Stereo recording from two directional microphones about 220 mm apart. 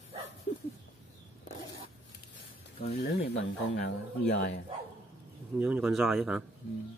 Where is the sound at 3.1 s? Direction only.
55° left (ahead or behind).